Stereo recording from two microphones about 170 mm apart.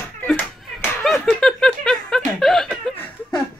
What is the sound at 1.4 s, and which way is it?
Chuckle, centre (ahead or behind).